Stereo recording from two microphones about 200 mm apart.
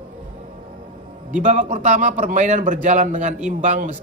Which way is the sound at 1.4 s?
35° right (ahead or behind).